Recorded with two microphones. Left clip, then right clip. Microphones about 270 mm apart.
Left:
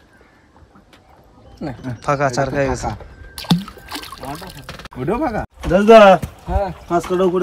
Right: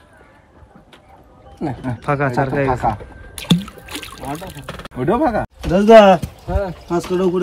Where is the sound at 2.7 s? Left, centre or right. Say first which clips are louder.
Right 5 dB; centre.